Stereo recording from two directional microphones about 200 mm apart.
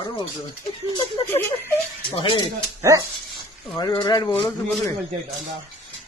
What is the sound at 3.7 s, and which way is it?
Speech, 20° left (ahead or behind).